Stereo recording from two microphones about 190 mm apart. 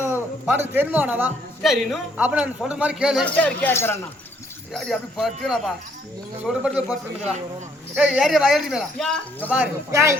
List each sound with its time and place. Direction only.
0.0 s a man's voice: 10° right (ahead or behind); by 4.0 s 15° left (ahead or behind)
4.7 s speech: centre (ahead or behind)
7.9 s speech: 5° right (ahead or behind)
9.9 s a man's voice: 15° right (ahead or behind)